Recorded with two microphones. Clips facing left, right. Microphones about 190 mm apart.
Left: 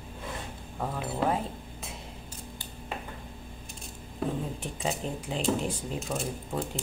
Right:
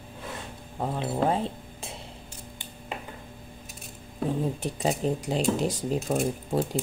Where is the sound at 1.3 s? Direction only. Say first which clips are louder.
Right 3 dB; 30° right (ahead or behind).